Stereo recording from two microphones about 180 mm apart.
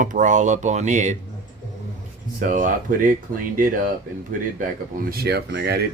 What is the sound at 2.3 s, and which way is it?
Speech, 45° right (ahead or behind).